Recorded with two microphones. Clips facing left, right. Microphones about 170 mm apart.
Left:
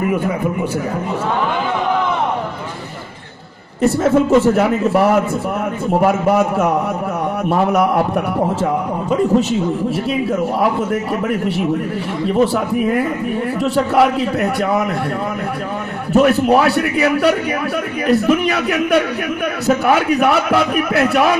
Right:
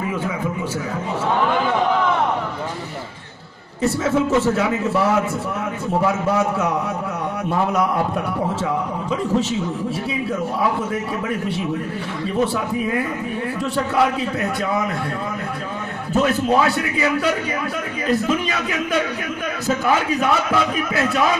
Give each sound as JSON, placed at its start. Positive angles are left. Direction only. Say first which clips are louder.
{"t": 3.8, "sound": "a man's voice", "louder": "left 5 dB", "side_deg": 65}
{"t": 16.2, "sound": "a man's voice", "louder": "left 5 dB", "side_deg": 65}